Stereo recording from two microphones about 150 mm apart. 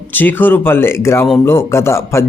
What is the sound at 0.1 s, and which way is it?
A man's voice, 10° left (ahead or behind).